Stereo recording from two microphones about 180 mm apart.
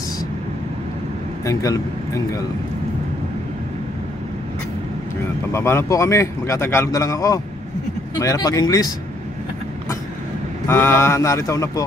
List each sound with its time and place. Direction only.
1.4 s speech: 20° left (ahead or behind)
5.5 s a man's voice: 15° left (ahead or behind)
10.7 s a man's voice: 15° left (ahead or behind)